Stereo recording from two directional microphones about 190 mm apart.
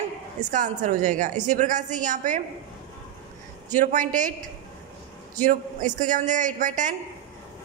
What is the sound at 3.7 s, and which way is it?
Speech, 40° right (ahead or behind).